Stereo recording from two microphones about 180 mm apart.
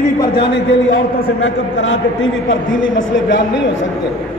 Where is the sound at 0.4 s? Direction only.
80° left.